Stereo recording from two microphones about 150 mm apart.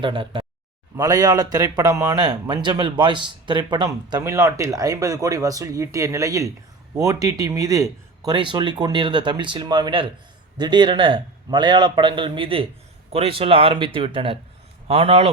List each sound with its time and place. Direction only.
0.0 s a man's voice: 35° right (ahead or behind)